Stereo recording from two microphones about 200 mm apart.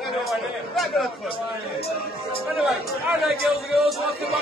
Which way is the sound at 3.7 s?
Centre (ahead or behind).